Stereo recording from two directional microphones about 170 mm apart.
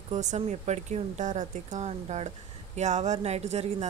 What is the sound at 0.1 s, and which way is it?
Speech, 45° right (ahead or behind).